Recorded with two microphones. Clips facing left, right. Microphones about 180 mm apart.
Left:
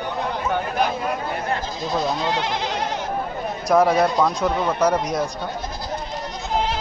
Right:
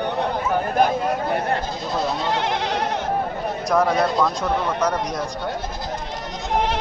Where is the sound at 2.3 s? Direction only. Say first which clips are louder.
Right 2 dB; 60° right (ahead or behind).